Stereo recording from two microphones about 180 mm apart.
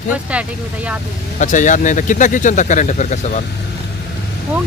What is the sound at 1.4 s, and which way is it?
Speech, 45° left (ahead or behind).